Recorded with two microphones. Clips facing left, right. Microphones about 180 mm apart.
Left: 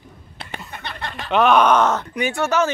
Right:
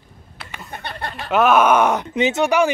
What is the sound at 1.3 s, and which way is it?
Speech, 5° right (ahead or behind).